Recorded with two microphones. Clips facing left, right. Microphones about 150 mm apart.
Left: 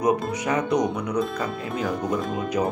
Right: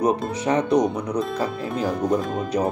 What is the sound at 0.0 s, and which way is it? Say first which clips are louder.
Speech: right 1 dB; 30° right (ahead or behind).